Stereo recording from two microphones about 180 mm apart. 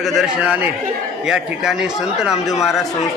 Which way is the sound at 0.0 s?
Centre (ahead or behind).